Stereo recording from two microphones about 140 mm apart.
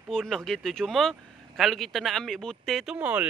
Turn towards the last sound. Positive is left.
turn(degrees=-10)  # may be behind; listen again after turning